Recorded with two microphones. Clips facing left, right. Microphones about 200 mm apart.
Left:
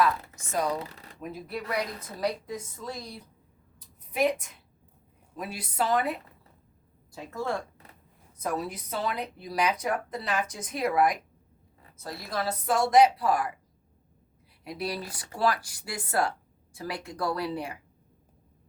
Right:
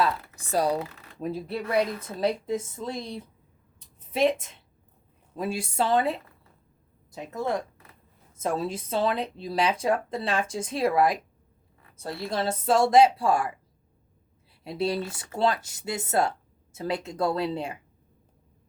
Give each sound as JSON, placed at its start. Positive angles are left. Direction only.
{"t": 0.0, "sound": "speech", "side_deg": -35}
{"t": 0.8, "sound": "speech", "side_deg": 35}
{"t": 1.2, "sound": "speech", "side_deg": -30}
{"t": 5.4, "sound": "speech", "side_deg": -25}
{"t": 14.6, "sound": "speech", "side_deg": -25}